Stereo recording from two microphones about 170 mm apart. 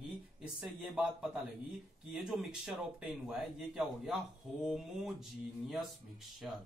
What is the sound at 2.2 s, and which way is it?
Speech, 5° right (ahead or behind).